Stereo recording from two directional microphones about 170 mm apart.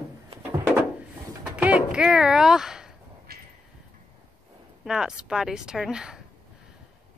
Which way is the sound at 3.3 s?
65° right (ahead or behind).